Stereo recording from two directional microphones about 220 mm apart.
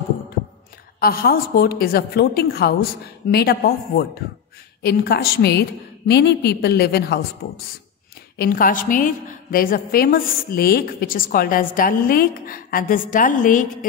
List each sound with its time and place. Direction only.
0.9 s a woman's voice: 45° left (ahead or behind)
8.4 s a woman's voice: 40° left (ahead or behind)